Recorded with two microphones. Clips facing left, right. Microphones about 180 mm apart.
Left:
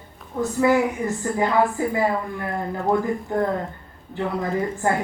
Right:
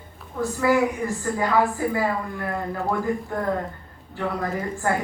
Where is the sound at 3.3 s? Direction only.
25° left (ahead or behind).